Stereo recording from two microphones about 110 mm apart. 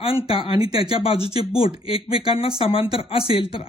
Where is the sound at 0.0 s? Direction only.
55° left (ahead or behind).